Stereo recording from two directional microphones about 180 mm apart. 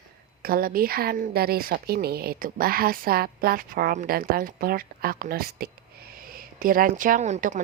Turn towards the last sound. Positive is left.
turn(degrees=-45)  # may be behind; listen again after turning